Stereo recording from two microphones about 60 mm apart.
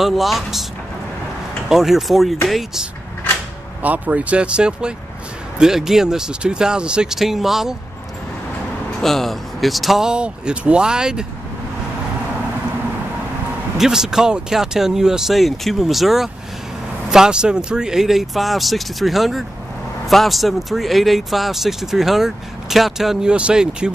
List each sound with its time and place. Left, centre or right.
0.0 s speech: centre
1.7 s speech: centre
3.8 s speech: right; by 7.7 s centre
9.0 s speech: centre
13.7 s speech: centre